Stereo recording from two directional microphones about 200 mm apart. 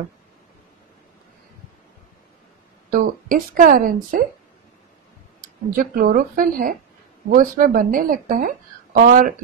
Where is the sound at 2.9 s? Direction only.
45° right (ahead or behind).